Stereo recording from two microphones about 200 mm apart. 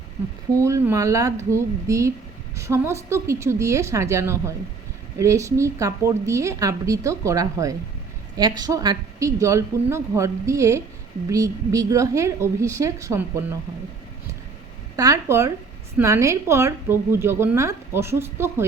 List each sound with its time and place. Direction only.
0.5 s a woman's voice: 15° right (ahead or behind)
14.9 s a woman's voice: 15° right (ahead or behind)